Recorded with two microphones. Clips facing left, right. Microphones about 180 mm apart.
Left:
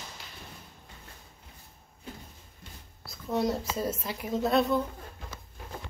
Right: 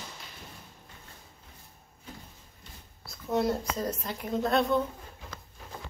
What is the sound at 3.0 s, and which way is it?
Speech, centre (ahead or behind).